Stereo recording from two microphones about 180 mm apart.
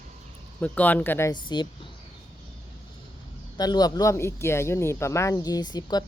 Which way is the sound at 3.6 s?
20° left (ahead or behind).